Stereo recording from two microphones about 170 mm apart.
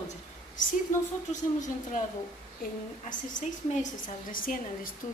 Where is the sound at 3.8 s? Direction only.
55° left (ahead or behind).